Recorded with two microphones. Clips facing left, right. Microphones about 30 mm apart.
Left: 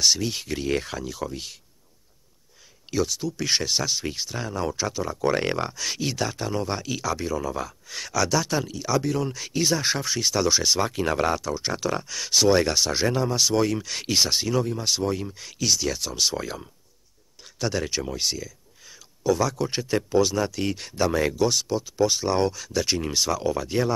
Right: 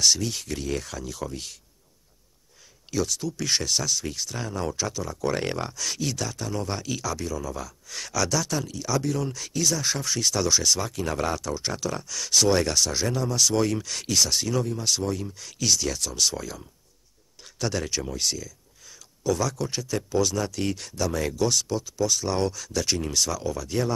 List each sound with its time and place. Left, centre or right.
0.0 s speech: centre
1.0 s speech: centre
2.9 s speech: centre
4.4 s speech: centre
13.9 s speech: left
15.6 s speech: centre
19.7 s speech: left
21.4 s speech: centre
21.9 s speech: left
22.3 s speech: centre